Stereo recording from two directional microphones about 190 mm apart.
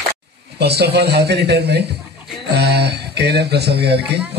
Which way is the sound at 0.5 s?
60° right (ahead or behind).